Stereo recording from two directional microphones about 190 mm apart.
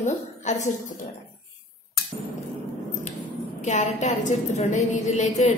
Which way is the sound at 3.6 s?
40° left (ahead or behind).